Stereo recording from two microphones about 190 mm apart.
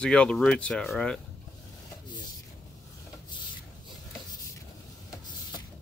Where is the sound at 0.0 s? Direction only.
5° left (ahead or behind).